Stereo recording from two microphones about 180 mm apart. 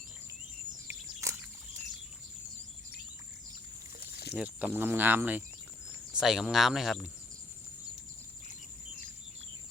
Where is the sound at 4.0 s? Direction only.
65° left (ahead or behind).